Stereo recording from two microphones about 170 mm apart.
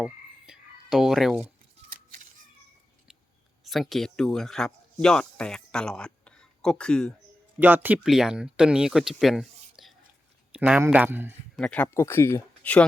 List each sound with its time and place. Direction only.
0.0 s frog: 5° right (ahead or behind)
3.6 s speech: centre (ahead or behind)
7.6 s speech: 10° right (ahead or behind)
11.5 s speech: 5° left (ahead or behind)